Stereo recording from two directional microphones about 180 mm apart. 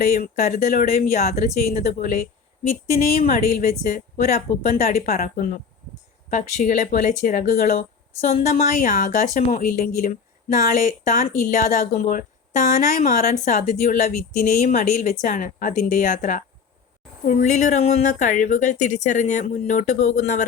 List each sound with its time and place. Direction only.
0.3 s speech: 40° left (ahead or behind)
1.5 s speech: 50° left (ahead or behind)
3.2 s speech: 45° left (ahead or behind)